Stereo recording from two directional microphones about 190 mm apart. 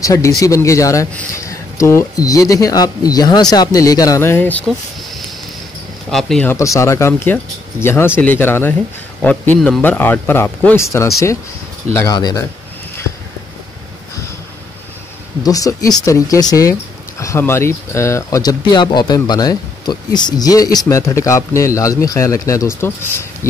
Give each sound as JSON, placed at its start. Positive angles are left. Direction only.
{"t": 0.0, "sound": "speech", "side_deg": 15}
{"t": 6.5, "sound": "speech", "side_deg": 15}
{"t": 15.4, "sound": "speech", "side_deg": 20}